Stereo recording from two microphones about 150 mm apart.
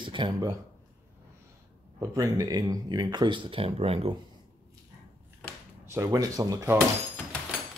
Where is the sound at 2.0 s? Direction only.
25° right (ahead or behind); by 4.1 s 40° right (ahead or behind).